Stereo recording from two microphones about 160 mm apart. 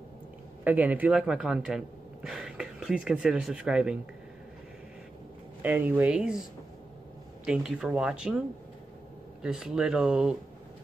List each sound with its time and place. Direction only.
0.7 s speech: 10° right (ahead or behind)
5.6 s speech: 10° right (ahead or behind)
7.4 s speech: 5° right (ahead or behind)
9.4 s speech: 5° right (ahead or behind)